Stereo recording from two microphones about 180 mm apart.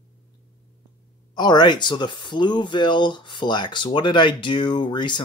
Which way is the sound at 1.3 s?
25° left (ahead or behind).